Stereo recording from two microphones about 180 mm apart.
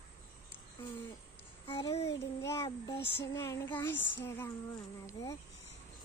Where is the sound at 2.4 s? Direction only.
15° left (ahead or behind).